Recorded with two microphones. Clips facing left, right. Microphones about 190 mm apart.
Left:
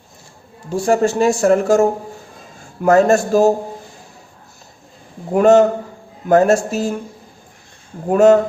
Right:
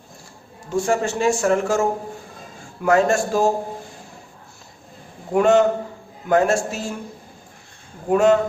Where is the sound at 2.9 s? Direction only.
40° left (ahead or behind).